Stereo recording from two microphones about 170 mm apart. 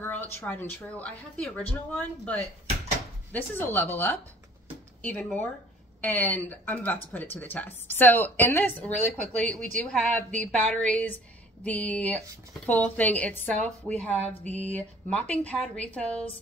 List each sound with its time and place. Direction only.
0.0 s speech: 10° left (ahead or behind)
14.4 s mantra: 40° right (ahead or behind)
14.7 s speech: 10° left (ahead or behind)